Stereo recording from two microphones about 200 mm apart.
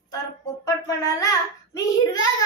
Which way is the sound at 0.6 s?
15° left (ahead or behind).